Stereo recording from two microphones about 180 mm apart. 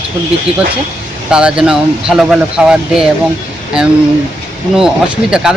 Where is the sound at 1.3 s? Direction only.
5° right (ahead or behind).